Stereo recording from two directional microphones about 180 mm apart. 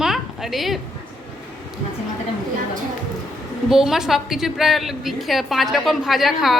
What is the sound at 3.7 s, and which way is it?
A woman's voice, centre (ahead or behind).